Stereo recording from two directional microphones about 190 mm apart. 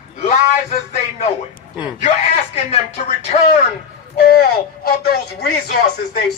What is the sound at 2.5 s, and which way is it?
A man's voice, 35° left (ahead or behind).